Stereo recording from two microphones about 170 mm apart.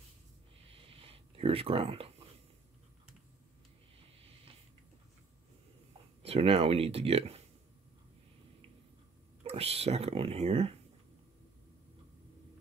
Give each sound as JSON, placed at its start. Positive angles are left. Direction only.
{"t": 0.7, "sound": "a sound", "side_deg": -35}
{"t": 6.2, "sound": "speech", "side_deg": -35}
{"t": 9.4, "sound": "speech", "side_deg": -35}